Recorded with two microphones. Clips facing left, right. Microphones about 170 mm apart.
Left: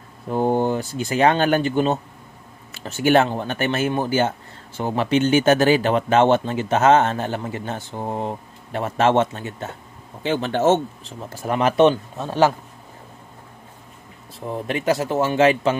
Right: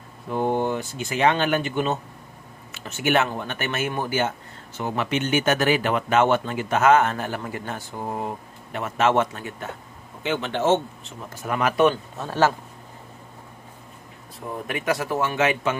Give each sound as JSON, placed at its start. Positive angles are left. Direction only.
{"t": 0.3, "sound": "speech", "side_deg": 35}
{"t": 11.4, "sound": "speech", "side_deg": 30}
{"t": 14.7, "sound": "speech", "side_deg": 30}